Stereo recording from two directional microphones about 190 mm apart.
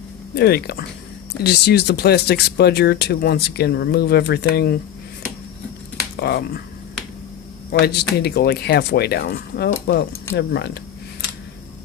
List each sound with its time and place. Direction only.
0.3 s speech: 60° left (ahead or behind)
6.1 s speech: 60° left (ahead or behind)
7.7 s speech: 60° left (ahead or behind)